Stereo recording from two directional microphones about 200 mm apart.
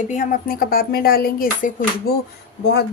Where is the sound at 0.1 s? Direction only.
40° left (ahead or behind).